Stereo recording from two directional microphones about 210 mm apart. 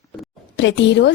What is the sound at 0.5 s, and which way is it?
Speech, 60° left (ahead or behind).